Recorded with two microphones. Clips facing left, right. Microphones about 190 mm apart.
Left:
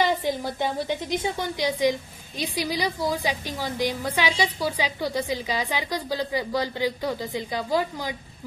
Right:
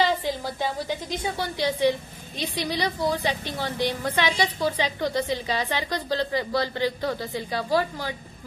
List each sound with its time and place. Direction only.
0.0 s a woman's voice: 15° left (ahead or behind)